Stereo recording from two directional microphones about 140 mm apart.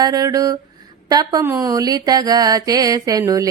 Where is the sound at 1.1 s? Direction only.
30° right (ahead or behind).